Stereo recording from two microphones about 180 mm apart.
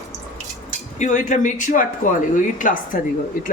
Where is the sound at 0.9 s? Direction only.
45° left (ahead or behind).